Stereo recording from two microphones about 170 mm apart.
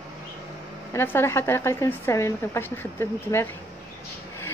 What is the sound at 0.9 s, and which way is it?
A woman's voice, 15° left (ahead or behind).